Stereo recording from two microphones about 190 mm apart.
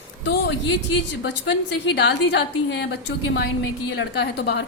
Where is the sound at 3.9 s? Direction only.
65° left (ahead or behind).